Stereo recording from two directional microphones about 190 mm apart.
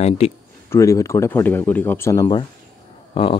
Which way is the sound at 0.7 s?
15° left (ahead or behind).